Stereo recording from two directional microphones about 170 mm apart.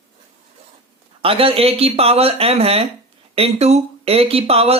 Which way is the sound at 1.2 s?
35° right (ahead or behind).